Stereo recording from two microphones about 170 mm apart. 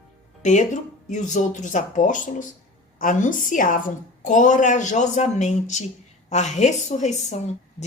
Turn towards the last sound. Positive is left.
turn(degrees=45)  # may be behind; listen again after turning